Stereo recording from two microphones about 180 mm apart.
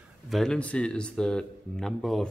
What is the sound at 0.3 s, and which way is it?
A man's voice, 5° left (ahead or behind).